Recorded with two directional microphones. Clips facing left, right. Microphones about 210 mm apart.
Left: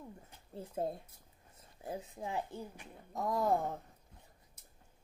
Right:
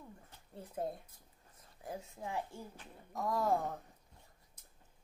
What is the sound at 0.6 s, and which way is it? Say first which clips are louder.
A woman's voice: left 3 dB; 25° left (ahead or behind).